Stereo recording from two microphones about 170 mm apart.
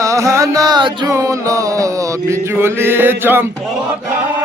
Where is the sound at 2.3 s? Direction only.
15° right (ahead or behind).